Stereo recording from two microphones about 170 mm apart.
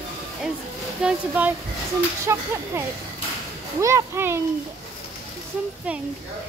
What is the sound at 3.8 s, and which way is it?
Speech, 15° right (ahead or behind).